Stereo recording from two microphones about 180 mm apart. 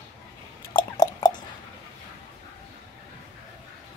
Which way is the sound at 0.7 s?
25° left (ahead or behind).